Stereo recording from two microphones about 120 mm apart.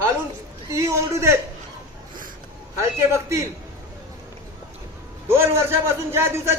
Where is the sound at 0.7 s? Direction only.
25° right (ahead or behind).